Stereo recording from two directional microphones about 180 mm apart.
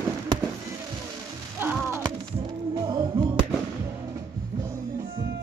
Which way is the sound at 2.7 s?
25° right (ahead or behind).